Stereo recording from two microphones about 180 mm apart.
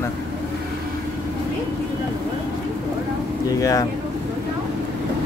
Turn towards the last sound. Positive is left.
turn(degrees=20)  # may be behind; listen again after turning